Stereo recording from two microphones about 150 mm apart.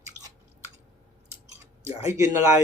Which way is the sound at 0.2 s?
25° right (ahead or behind).